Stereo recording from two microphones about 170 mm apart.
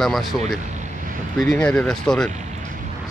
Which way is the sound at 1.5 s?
5° left (ahead or behind).